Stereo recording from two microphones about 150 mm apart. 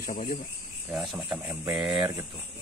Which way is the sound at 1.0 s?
10° right (ahead or behind).